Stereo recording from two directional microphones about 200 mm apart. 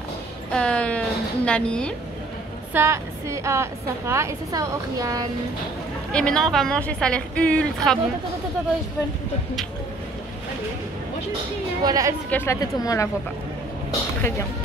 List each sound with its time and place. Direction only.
0.5 s speech: 5° left (ahead or behind)
2.7 s a woman's voice: 15° right (ahead or behind)
6.1 s a woman's voice: 5° left (ahead or behind)
11.8 s a woman's voice: 15° right (ahead or behind)
12.3 s speech: 10° left (ahead or behind)